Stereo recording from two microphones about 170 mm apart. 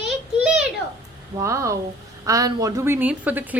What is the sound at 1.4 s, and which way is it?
Speech, 15° right (ahead or behind).